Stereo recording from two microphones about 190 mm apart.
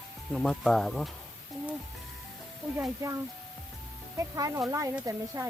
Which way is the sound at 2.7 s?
15° right (ahead or behind).